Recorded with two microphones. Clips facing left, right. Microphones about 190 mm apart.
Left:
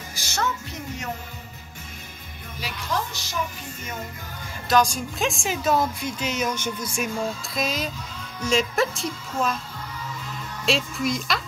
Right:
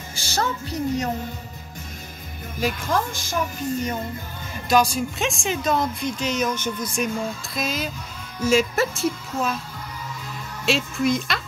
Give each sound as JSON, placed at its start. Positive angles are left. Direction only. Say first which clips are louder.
{"t": 0.1, "sound": "music", "louder": "right 2 dB", "side_deg": -30}
{"t": 2.6, "sound": "speech", "louder": "right 6 dB", "side_deg": -50}
{"t": 4.6, "sound": "speech", "louder": "right 2 dB", "side_deg": -10}
{"t": 7.5, "sound": "speech", "louder": "right 1 dB", "side_deg": 0}
{"t": 10.6, "sound": "speech", "louder": "right 2 dB", "side_deg": 0}